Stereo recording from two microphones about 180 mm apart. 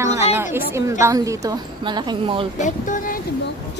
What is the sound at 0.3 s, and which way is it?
A woman's voice, 15° right (ahead or behind).